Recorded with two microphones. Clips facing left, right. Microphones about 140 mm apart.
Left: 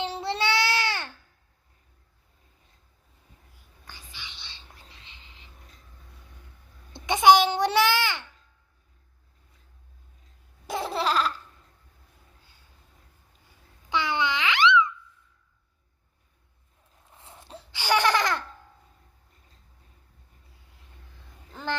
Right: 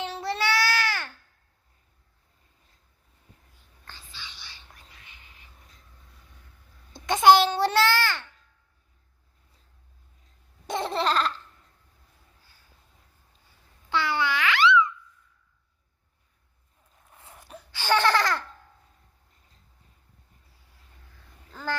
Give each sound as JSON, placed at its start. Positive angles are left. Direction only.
{"t": 0.0, "sound": "child singing", "side_deg": 25}
{"t": 3.8, "sound": "whispering", "side_deg": 15}
{"t": 7.3, "sound": "child singing", "side_deg": 15}
{"t": 10.7, "sound": "laughter", "side_deg": 5}
{"t": 13.9, "sound": "babbling", "side_deg": 20}
{"t": 17.1, "sound": "a sound", "side_deg": 25}
{"t": 17.7, "sound": "laughter", "side_deg": 15}
{"t": 21.5, "sound": "quack", "side_deg": 20}